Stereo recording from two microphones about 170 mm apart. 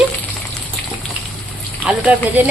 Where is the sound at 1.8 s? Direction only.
10° right (ahead or behind).